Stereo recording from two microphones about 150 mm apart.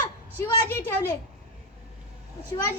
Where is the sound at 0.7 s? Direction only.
15° left (ahead or behind).